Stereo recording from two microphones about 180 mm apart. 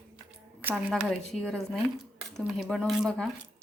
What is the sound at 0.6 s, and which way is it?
Speech, 5° right (ahead or behind).